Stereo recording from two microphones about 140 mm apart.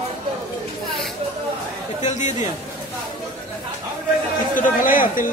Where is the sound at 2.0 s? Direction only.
60° left (ahead or behind).